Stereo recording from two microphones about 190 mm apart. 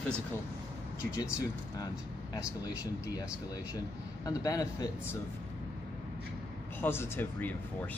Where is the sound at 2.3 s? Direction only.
20° left (ahead or behind).